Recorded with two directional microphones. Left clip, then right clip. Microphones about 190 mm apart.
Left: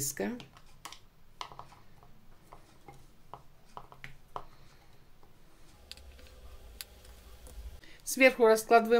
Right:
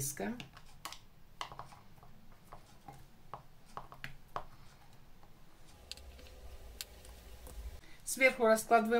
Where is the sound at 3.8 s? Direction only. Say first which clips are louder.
Even; 5° left (ahead or behind).